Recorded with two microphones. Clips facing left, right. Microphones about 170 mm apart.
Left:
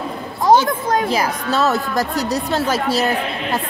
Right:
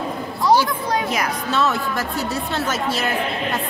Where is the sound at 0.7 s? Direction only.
50° left (ahead or behind).